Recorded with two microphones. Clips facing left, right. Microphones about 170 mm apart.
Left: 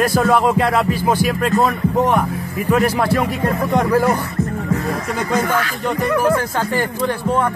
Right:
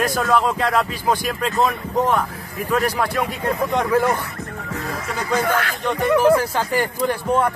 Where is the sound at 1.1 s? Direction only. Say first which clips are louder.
Left 4 dB; 5° left (ahead or behind).